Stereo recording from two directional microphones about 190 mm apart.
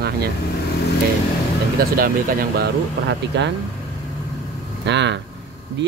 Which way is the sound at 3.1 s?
65° right (ahead or behind).